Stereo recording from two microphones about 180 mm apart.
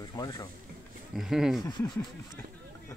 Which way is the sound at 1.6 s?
25° left (ahead or behind).